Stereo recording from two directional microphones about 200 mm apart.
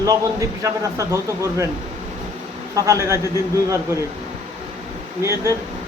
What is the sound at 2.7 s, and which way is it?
Speech, 15° right (ahead or behind).